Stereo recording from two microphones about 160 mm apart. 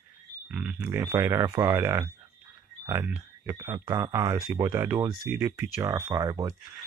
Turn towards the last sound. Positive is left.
turn(degrees=-20)  # may be behind; listen again after turning